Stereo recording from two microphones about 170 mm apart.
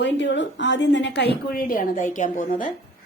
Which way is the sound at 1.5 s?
55° left (ahead or behind).